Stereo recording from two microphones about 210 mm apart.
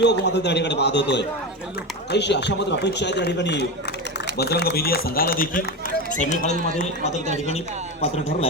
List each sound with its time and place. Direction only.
0.0 s a man's voice: 55° left (ahead or behind); by 6.4 s 35° left (ahead or behind)